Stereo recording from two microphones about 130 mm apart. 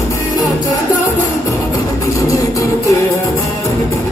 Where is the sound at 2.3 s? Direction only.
25° left (ahead or behind).